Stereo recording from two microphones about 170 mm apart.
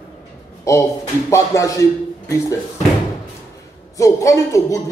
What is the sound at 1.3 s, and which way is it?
Speech, 20° left (ahead or behind).